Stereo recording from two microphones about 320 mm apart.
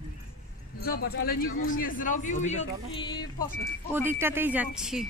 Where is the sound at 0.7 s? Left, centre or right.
Left; by 3.4 s centre.